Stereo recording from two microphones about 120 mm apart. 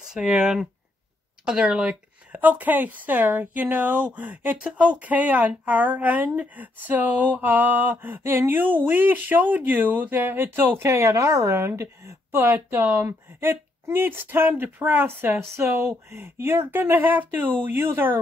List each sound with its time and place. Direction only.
0.0 s speech: 5° right (ahead or behind)